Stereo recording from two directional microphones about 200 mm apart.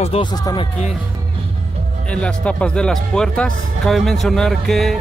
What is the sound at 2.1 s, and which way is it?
Speech, 5° left (ahead or behind).